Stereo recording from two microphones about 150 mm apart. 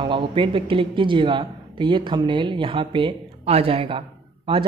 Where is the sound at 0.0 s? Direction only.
35° right (ahead or behind).